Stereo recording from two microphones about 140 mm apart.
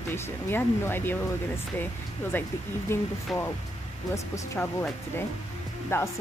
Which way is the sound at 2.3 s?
15° left (ahead or behind).